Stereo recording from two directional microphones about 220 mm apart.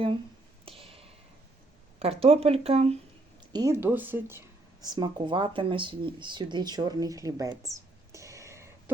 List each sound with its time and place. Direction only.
0.6 s a sound: 25° right (ahead or behind)
2.0 s speech: 25° right (ahead or behind)
3.5 s speech: 15° right (ahead or behind)